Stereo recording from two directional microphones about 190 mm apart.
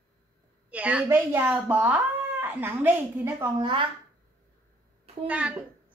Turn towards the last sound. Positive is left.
turn(degrees=-5)  # may be behind; listen again after turning